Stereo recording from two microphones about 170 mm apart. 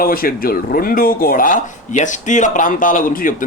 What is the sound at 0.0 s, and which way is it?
A man's voice, 60° left (ahead or behind).